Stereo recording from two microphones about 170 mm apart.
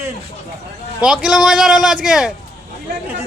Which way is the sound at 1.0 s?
5° right (ahead or behind).